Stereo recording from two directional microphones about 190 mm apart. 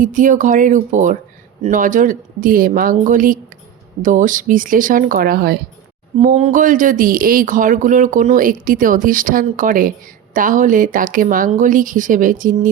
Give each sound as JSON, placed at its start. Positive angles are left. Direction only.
{"t": 0.0, "sound": "speech", "side_deg": -45}
{"t": 6.1, "sound": "speech", "side_deg": -35}